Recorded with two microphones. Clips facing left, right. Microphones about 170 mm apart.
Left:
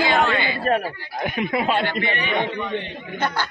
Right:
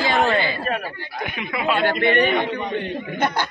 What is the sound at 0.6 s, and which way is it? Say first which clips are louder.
A man's voice: left 4 dB; 40° left (ahead or behind).